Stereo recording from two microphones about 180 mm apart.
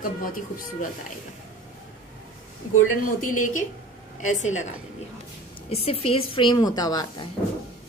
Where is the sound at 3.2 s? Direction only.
45° left (ahead or behind).